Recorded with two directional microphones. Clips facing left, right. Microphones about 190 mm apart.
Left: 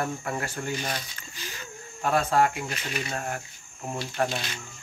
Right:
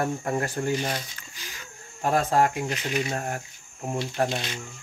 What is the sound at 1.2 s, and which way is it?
Livestock, 10° right (ahead or behind).